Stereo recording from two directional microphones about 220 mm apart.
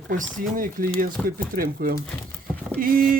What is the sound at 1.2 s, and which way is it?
Speech, centre (ahead or behind).